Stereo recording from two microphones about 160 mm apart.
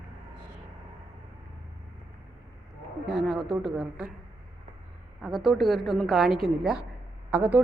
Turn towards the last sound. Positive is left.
turn(degrees=-10)  # may be behind; listen again after turning